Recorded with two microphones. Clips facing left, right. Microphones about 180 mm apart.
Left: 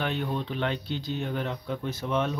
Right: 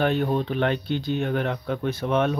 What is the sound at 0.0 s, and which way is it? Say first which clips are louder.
Speech: right 7 dB; 45° right (ahead or behind).